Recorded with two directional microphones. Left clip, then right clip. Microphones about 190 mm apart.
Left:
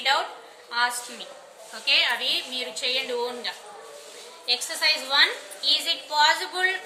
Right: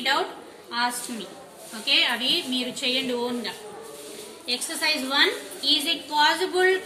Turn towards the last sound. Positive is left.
turn(degrees=20)  # may be behind; listen again after turning